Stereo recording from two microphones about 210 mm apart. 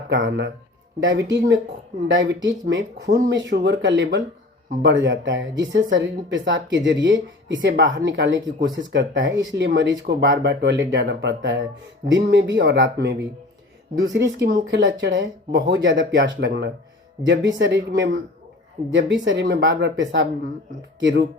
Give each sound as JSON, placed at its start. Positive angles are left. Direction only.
{"t": 0.1, "sound": "a woman's voice", "side_deg": -60}